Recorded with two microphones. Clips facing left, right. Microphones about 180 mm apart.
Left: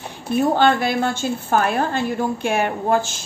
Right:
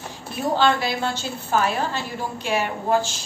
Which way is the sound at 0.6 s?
50° left (ahead or behind).